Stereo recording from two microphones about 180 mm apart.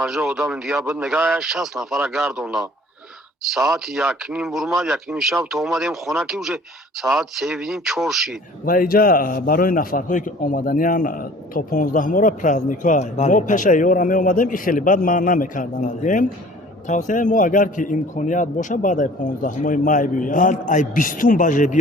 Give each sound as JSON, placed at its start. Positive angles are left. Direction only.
{"t": 0.0, "sound": "speech", "side_deg": -5}
{"t": 8.6, "sound": "a man's voice", "side_deg": 50}